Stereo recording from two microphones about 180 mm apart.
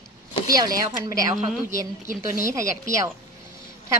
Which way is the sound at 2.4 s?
15° right (ahead or behind).